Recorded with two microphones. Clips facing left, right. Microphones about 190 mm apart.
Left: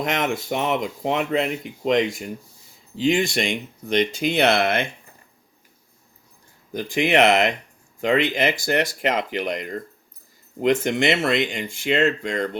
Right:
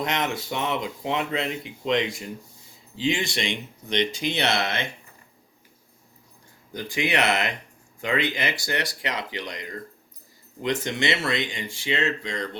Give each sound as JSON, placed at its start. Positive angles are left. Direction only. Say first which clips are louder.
{"t": 0.1, "sound": "speech", "louder": "left 4 dB", "side_deg": 50}
{"t": 6.7, "sound": "speech", "louder": "left 7 dB", "side_deg": 50}
{"t": 10.8, "sound": "speech", "louder": "left 6 dB", "side_deg": 50}